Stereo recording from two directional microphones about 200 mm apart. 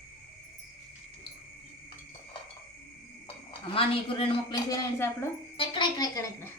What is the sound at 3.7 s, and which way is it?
A woman's voice, 25° left (ahead or behind).